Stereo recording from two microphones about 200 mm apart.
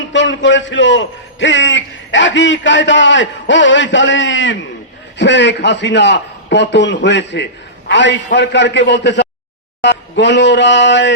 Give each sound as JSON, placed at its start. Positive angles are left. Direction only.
{"t": 0.1, "sound": "a man's voice", "side_deg": 65}